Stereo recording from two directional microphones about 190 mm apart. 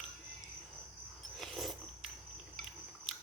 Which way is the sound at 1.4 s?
Centre (ahead or behind).